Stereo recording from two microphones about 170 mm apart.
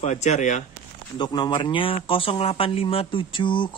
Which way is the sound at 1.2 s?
25° left (ahead or behind).